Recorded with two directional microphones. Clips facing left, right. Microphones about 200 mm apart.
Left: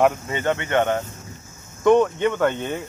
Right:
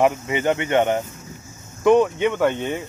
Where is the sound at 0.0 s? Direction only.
15° right (ahead or behind).